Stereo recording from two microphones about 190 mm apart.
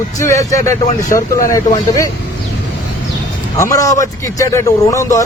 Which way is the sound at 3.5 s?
15° left (ahead or behind).